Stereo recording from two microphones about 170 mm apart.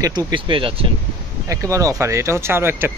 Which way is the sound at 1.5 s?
20° right (ahead or behind).